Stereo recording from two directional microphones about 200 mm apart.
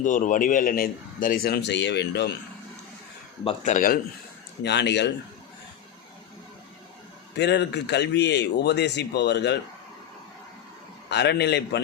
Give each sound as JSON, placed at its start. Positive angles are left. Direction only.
{"t": 0.0, "sound": "a man's voice", "side_deg": 40}
{"t": 3.4, "sound": "speech", "side_deg": 35}
{"t": 4.6, "sound": "speech", "side_deg": 60}
{"t": 7.3, "sound": "speech", "side_deg": 60}
{"t": 11.1, "sound": "speech", "side_deg": 55}